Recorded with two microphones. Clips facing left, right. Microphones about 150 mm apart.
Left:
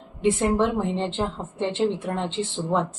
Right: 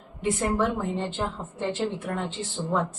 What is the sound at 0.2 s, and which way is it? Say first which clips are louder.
Speech: left 4 dB; 25° left (ahead or behind).